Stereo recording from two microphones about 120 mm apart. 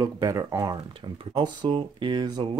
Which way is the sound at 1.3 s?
40° right (ahead or behind).